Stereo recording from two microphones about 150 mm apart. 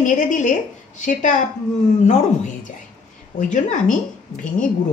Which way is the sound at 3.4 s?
55° left (ahead or behind).